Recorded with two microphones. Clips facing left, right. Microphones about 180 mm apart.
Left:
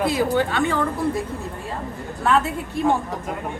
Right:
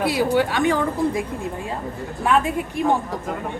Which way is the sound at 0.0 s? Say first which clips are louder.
Right 1 dB; 10° right (ahead or behind).